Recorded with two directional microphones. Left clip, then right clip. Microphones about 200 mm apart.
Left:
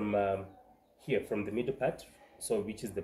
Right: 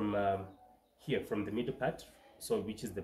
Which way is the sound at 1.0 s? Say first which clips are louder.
Left 3 dB; 20° right (ahead or behind).